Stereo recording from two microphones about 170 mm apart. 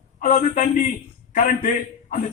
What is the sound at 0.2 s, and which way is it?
A man's voice, 50° left (ahead or behind).